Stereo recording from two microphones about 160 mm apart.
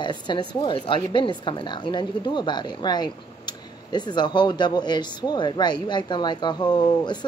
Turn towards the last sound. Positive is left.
turn(degrees=25)  # may be behind; listen again after turning